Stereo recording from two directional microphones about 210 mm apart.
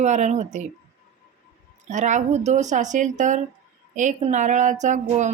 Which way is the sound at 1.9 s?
35° right (ahead or behind).